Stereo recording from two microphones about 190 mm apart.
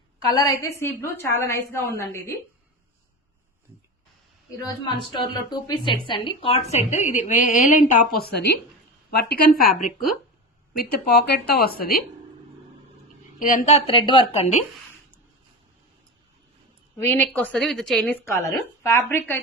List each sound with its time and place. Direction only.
0.3 s a woman's voice: 20° left (ahead or behind)
4.5 s a woman's voice: 20° left (ahead or behind); by 8.2 s 40° left (ahead or behind)
8.2 s a woman's voice: 60° left (ahead or behind)
13.4 s a woman's voice: 45° left (ahead or behind)
17.0 s a woman's voice: 10° left (ahead or behind)
18.3 s a woman's voice: 15° left (ahead or behind)